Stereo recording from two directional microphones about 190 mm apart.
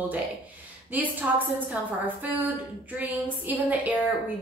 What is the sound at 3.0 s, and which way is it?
Speech, 10° right (ahead or behind).